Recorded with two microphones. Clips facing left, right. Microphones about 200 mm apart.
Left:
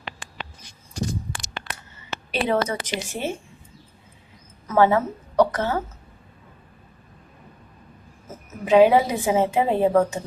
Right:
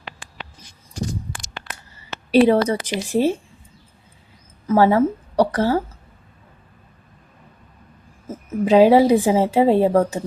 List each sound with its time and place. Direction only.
2.0 s a sound: 35° right (ahead or behind)
2.8 s a woman's voice: 35° right (ahead or behind)
4.6 s a woman's voice: 30° right (ahead or behind)
8.6 s a woman's voice: 35° right (ahead or behind)